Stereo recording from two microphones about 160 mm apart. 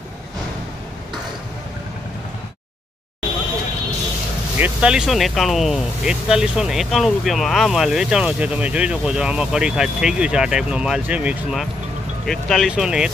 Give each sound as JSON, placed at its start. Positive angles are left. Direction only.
{"t": 4.6, "sound": "speech", "side_deg": -10}
{"t": 12.3, "sound": "speech", "side_deg": 0}